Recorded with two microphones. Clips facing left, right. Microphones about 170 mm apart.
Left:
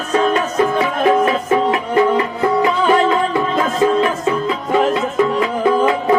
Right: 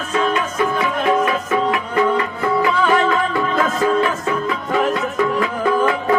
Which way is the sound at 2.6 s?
20° left (ahead or behind).